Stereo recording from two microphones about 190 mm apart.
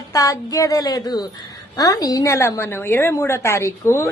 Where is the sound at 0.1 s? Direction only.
15° left (ahead or behind).